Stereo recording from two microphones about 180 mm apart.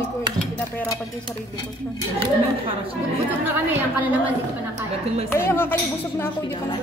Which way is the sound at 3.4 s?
10° right (ahead or behind).